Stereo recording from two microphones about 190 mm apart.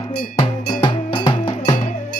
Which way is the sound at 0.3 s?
25° left (ahead or behind).